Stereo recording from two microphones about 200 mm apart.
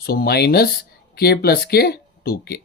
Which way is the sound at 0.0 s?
50° left (ahead or behind).